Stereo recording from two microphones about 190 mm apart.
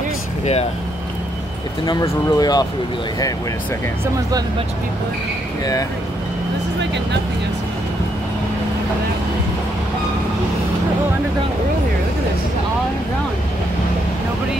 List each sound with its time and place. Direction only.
1.9 s speech: 20° left (ahead or behind)